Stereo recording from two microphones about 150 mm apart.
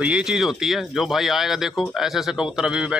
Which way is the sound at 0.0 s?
5° right (ahead or behind).